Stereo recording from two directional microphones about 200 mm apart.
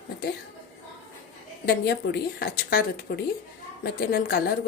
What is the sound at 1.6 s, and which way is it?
A woman's voice, 50° left (ahead or behind).